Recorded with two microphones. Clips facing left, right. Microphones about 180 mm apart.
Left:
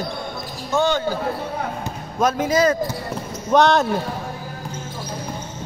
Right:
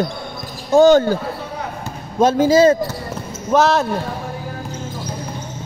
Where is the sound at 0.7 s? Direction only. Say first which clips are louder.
Right 10 dB; 40° right (ahead or behind).